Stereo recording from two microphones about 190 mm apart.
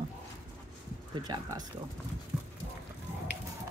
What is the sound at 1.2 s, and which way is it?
Speech, 20° right (ahead or behind).